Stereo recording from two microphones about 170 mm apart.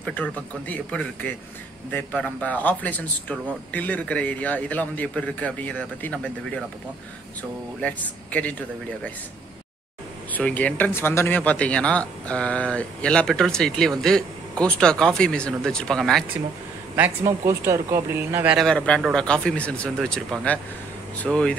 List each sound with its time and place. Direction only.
0.0 s speech: 10° left (ahead or behind)
7.8 s speech: 10° left (ahead or behind)
10.3 s speech: 10° left (ahead or behind)
16.9 s speech: 15° right (ahead or behind)
18.7 s speech: 5° left (ahead or behind)